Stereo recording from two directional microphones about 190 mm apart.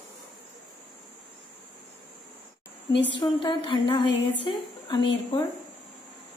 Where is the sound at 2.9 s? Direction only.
70° left (ahead or behind).